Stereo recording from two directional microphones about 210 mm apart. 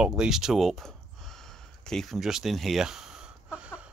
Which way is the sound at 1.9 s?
Centre (ahead or behind).